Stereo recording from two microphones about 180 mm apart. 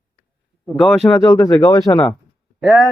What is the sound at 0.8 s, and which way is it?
Speech, centre (ahead or behind).